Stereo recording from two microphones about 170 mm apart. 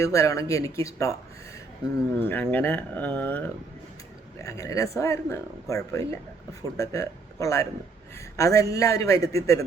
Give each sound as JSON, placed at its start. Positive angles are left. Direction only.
{"t": 0.0, "sound": "speech", "side_deg": 20}
{"t": 2.1, "sound": "speech", "side_deg": 10}